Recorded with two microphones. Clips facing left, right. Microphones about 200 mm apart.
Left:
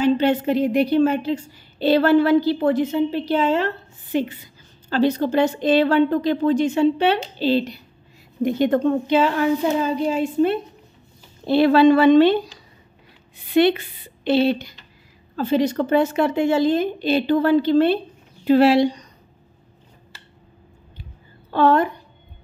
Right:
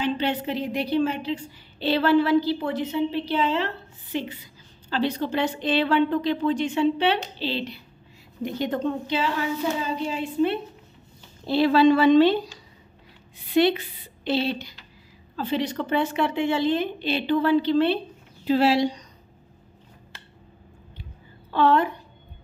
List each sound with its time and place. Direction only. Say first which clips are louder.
0.0 s a woman's voice: left 8 dB; 45° left (ahead or behind)
8.4 s a woman's voice: left 8 dB; 55° left (ahead or behind)
11.4 s a woman's voice: left 4 dB; 60° left (ahead or behind)
13.5 s a woman's voice: left 4 dB; 55° left (ahead or behind)
18.4 s speech: left 6 dB; 60° left (ahead or behind)
21.5 s a woman's voice: left 3 dB; 45° left (ahead or behind)